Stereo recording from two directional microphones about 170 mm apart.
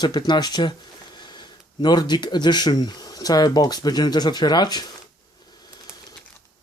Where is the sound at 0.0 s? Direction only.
25° left (ahead or behind).